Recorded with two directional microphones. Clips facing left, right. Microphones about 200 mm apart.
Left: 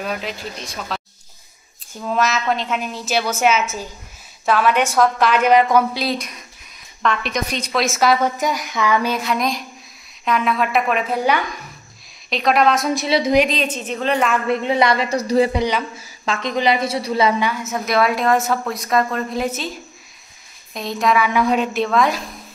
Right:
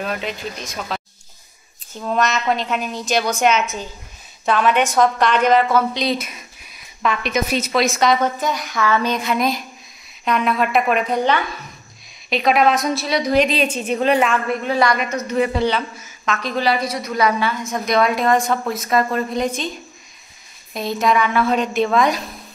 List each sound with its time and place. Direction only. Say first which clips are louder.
0.0 s a woman's voice: right 1 dB; centre (ahead or behind)
2.0 s a woman's voice: even; centre (ahead or behind)
6.0 s a woman's voice: right 1 dB; 5° right (ahead or behind)
12.9 s a woman's voice: left 2 dB; 25° left (ahead or behind)
13.5 s a woman's voice: right 3 dB; 10° right (ahead or behind)
14.5 s a woman's voice: left 1 dB; 25° left (ahead or behind)
15.5 s a woman's voice: right 1 dB; 15° left (ahead or behind)
17.5 s a woman's voice: right 1 dB; 5° left (ahead or behind)
20.7 s a woman's voice: right 1 dB; centre (ahead or behind)
21.3 s a woman's voice: left 1 dB; 15° left (ahead or behind)
21.7 s a woman's voice: right 1 dB; centre (ahead or behind)